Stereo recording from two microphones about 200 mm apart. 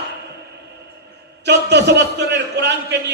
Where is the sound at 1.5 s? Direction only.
55° right (ahead or behind).